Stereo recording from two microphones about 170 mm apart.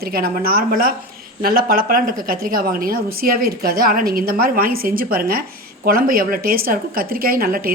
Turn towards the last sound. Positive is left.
turn(degrees=-60)  # may be behind; listen again after turning